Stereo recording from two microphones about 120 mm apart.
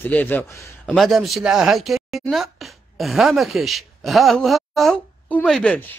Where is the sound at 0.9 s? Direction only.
Centre (ahead or behind).